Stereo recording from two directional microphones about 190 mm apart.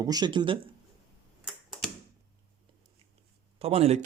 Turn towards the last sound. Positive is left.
turn(degrees=-30)  # may be behind; listen again after turning